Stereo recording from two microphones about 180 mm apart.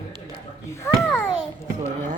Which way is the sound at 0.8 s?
10° left (ahead or behind).